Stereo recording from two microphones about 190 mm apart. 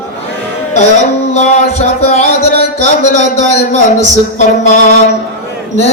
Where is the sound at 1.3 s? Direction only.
35° left (ahead or behind).